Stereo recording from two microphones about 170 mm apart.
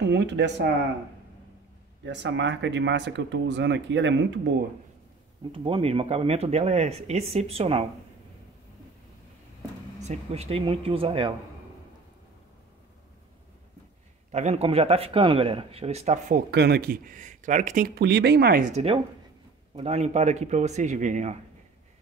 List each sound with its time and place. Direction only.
0.0 s speech: 90° right
2.0 s speech: 90° right
5.5 s speech: 30° right (ahead or behind)
10.0 s speech: 40° right (ahead or behind)
14.3 s speech: 40° right (ahead or behind)
16.3 s speech: 70° right (ahead or behind)
18.6 s a man's voice: 40° right (ahead or behind)